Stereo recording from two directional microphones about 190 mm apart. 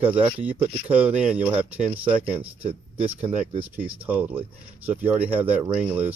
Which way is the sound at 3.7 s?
10° right (ahead or behind).